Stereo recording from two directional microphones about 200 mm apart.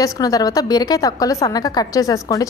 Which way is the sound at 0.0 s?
20° left (ahead or behind).